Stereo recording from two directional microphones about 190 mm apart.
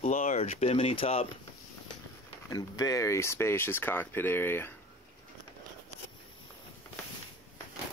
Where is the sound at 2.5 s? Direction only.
20° left (ahead or behind).